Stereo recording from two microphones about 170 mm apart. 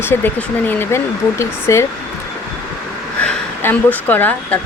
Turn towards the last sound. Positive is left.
turn(degrees=10)  # may be behind; listen again after turning